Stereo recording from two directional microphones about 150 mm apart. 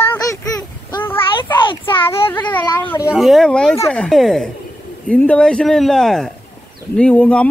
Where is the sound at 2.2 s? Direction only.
10° left (ahead or behind).